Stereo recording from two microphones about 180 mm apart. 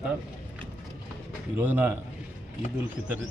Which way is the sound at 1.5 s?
10° right (ahead or behind).